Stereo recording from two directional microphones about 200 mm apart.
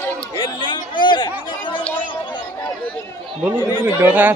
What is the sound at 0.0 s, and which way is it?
Chatter, 10° left (ahead or behind).